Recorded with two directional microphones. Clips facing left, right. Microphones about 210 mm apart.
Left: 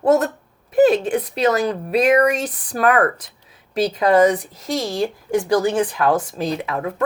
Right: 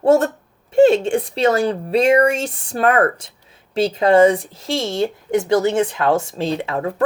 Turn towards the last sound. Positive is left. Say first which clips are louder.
# right 2 dB
turn(degrees=-30)  # may be behind; listen again after turning